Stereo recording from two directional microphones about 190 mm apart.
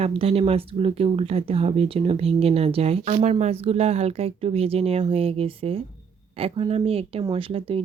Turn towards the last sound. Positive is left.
turn(degrees=-30)  # may be behind; listen again after turning